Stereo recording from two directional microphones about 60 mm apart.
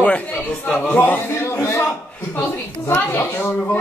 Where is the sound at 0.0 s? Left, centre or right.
Left.